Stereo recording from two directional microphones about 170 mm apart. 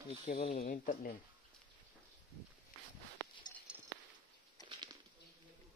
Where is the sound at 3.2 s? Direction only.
20° right (ahead or behind).